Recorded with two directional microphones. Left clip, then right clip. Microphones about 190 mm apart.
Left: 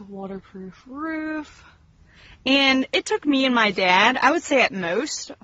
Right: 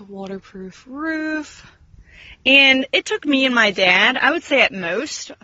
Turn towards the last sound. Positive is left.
turn(degrees=0)  # may be behind; listen again after turning